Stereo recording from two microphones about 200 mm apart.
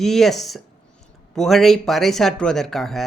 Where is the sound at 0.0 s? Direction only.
Centre (ahead or behind).